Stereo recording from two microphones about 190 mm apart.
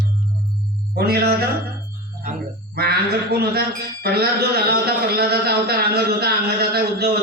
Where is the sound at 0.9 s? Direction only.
55° right (ahead or behind).